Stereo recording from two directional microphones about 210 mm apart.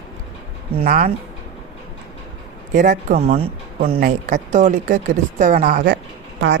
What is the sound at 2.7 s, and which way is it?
Speech, 35° right (ahead or behind).